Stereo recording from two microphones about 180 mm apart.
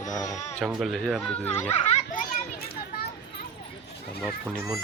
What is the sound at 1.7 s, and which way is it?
Children playing, 35° left (ahead or behind).